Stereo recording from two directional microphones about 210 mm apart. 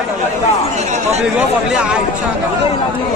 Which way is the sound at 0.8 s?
30° right (ahead or behind).